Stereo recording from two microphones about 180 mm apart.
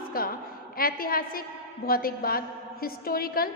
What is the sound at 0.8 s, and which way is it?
A woman's voice, 55° left (ahead or behind).